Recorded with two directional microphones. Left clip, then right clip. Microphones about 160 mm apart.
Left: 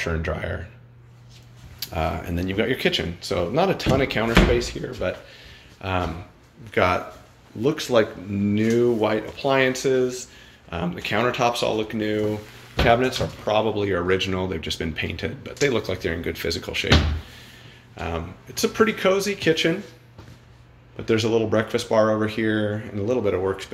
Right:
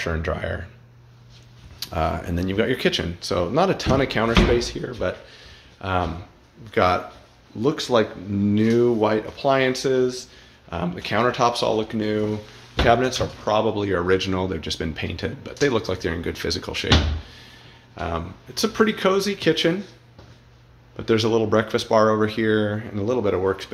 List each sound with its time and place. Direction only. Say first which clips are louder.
0.0 s speech: right 1 dB; 40° right (ahead or behind)
1.8 s a man's voice: right 2 dB; 40° right (ahead or behind)
17.9 s speech: right 2 dB; 30° right (ahead or behind)
20.9 s speech: right 1 dB; 30° right (ahead or behind)